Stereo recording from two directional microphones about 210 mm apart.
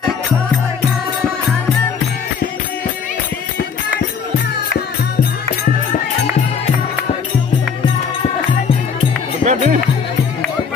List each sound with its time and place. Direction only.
9.4 s music: 35° right (ahead or behind)